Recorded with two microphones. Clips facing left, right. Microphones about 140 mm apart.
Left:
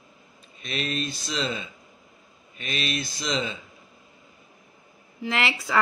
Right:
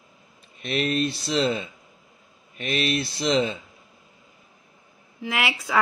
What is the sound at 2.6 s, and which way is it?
Speech, 55° right (ahead or behind).